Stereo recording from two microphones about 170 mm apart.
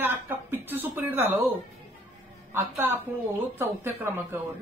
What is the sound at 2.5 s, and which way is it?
Speech, 10° right (ahead or behind).